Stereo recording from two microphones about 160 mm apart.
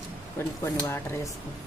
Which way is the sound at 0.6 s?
20° left (ahead or behind).